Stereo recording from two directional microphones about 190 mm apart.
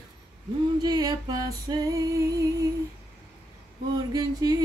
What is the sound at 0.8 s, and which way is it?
Music, 20° right (ahead or behind).